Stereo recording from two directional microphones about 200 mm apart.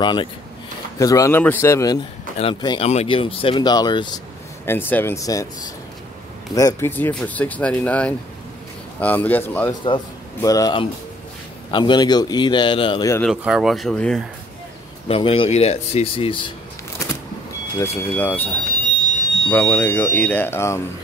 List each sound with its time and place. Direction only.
0.0 s speech: 25° left (ahead or behind)
2.3 s speech: 25° left (ahead or behind)
4.6 s speech: 10° left (ahead or behind)
6.5 s speech: 15° left (ahead or behind)
9.7 s speech: 20° left (ahead or behind)
13.3 s speech: 5° right (ahead or behind)
15.0 s speech: 25° left (ahead or behind)
17.0 s vehicle: 15° left (ahead or behind)
17.7 s speech: 10° left (ahead or behind)